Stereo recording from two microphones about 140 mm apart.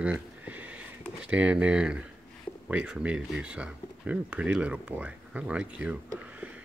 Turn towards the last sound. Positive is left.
turn(degrees=-10)  # may be behind; listen again after turning